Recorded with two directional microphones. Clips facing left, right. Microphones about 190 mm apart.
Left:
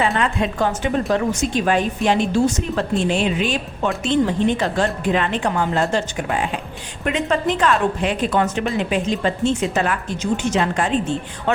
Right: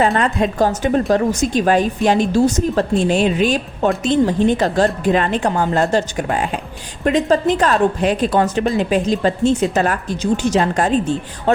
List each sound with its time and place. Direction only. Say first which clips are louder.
0.2 s a woman's voice: right 4 dB; 40° right (ahead or behind)